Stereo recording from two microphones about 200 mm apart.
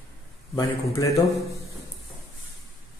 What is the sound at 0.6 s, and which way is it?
Speech, 15° left (ahead or behind).